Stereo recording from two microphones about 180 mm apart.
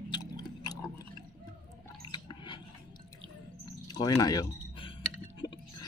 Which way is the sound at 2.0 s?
25° left (ahead or behind).